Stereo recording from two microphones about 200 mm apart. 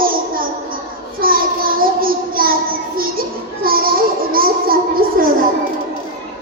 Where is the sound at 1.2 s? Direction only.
45° right (ahead or behind).